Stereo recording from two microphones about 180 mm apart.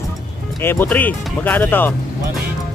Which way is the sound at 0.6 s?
10° left (ahead or behind).